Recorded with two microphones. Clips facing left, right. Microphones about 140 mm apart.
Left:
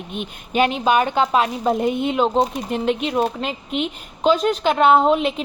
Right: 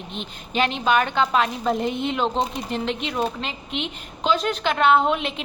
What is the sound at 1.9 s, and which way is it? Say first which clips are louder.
A woman's voice: left 5 dB; 50° left (ahead or behind).